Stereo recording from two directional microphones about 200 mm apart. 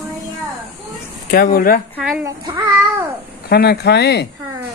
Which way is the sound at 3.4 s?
50° left (ahead or behind).